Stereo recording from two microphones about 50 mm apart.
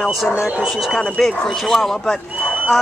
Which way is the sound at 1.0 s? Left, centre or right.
Centre.